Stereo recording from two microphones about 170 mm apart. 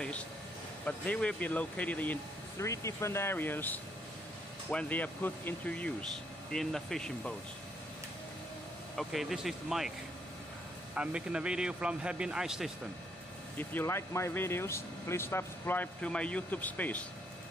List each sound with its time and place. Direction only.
0.8 s speech: 5° left (ahead or behind)
8.9 s speech: centre (ahead or behind)
11.0 s speech: 5° right (ahead or behind)
13.6 s speech: 15° left (ahead or behind)